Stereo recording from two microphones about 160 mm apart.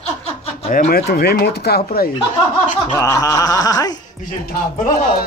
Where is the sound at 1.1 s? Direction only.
90° left; by 2.1 s 75° left (ahead or behind).